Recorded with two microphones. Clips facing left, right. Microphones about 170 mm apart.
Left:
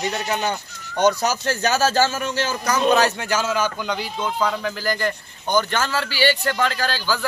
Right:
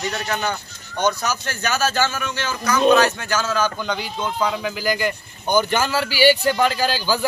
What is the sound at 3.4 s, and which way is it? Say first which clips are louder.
Speech: right 2 dB; 15° left (ahead or behind).